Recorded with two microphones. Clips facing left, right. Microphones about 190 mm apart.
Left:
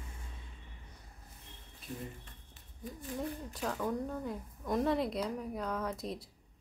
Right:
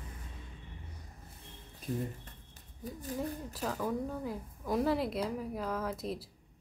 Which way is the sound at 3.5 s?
Centre (ahead or behind).